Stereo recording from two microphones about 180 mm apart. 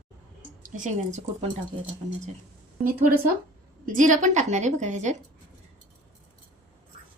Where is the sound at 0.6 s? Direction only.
45° right (ahead or behind).